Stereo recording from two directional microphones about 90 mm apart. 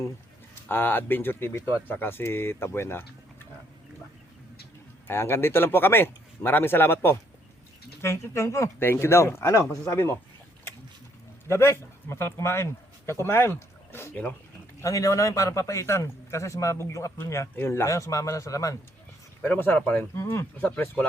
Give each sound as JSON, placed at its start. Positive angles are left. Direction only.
{"t": 0.7, "sound": "speech", "side_deg": 25}
{"t": 5.0, "sound": "a man's voice", "side_deg": 25}
{"t": 11.4, "sound": "speech", "side_deg": 30}
{"t": 14.8, "sound": "a man's voice", "side_deg": 35}
{"t": 19.4, "sound": "speech", "side_deg": 20}
{"t": 20.1, "sound": "speech", "side_deg": 30}